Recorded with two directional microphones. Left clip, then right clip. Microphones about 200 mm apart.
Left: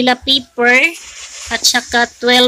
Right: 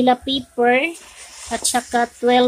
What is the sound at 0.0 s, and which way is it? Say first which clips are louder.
Speech: left 4 dB; 5° right (ahead or behind).